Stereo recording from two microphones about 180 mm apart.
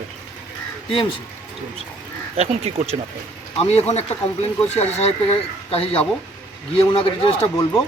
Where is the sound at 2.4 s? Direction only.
35° right (ahead or behind).